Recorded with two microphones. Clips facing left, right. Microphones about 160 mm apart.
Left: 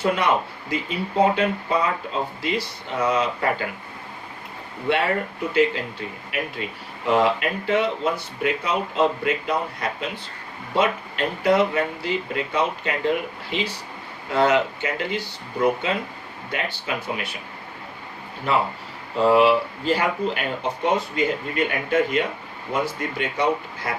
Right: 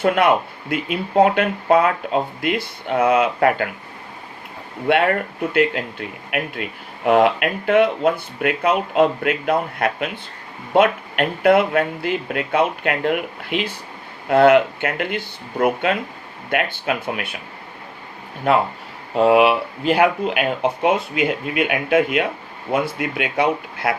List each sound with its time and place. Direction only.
0.7 s speech: 60° right (ahead or behind)
4.9 s speech: 55° right (ahead or behind)
19.1 s speech: 65° right (ahead or behind)